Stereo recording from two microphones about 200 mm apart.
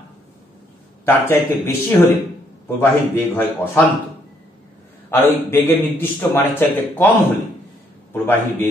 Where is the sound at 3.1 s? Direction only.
10° left (ahead or behind).